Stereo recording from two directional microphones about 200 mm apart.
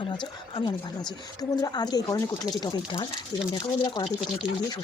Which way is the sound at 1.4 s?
20° left (ahead or behind).